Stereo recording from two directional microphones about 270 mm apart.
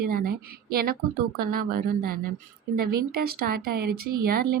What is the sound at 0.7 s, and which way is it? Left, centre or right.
Speech, right.